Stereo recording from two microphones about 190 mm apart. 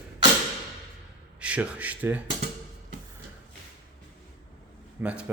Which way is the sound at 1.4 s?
5° right (ahead or behind).